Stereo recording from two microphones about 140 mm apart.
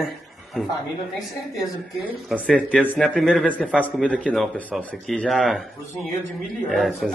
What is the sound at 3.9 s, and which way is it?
Speech, 5° left (ahead or behind).